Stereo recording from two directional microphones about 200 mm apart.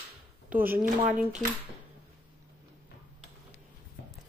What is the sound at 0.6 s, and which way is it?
Speech, 10° right (ahead or behind).